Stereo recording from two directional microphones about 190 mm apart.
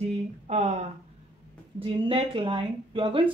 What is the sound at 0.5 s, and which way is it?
Speech, 35° right (ahead or behind).